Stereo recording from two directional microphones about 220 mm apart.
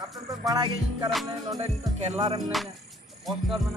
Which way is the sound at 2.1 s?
25° right (ahead or behind).